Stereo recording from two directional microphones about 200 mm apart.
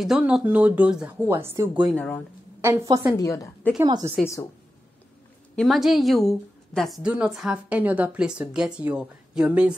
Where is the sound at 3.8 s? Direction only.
20° right (ahead or behind).